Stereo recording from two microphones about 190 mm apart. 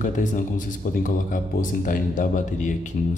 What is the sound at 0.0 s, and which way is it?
Speech, 40° left (ahead or behind).